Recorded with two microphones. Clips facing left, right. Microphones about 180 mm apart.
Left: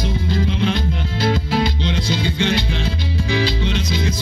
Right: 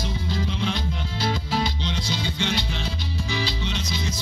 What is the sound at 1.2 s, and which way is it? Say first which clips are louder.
Music: left 7 dB; 60° left (ahead or behind).